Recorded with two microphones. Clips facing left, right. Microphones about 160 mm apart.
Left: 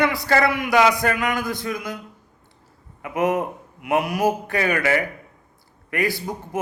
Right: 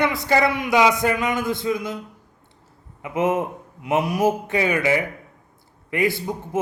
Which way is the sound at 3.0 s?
25° right (ahead or behind).